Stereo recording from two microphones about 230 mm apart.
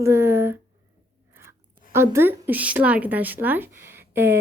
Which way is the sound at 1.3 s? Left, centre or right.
Centre.